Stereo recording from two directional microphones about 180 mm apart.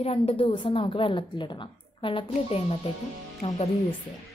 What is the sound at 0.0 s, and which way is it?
A woman's voice, 30° left (ahead or behind).